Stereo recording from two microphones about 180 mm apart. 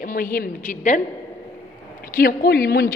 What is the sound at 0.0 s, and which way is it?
A woman's voice, 50° left (ahead or behind).